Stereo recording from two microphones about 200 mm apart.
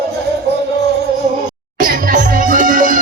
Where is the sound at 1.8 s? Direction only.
45° right (ahead or behind).